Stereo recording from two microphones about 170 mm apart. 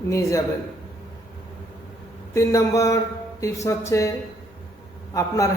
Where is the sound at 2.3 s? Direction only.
20° left (ahead or behind).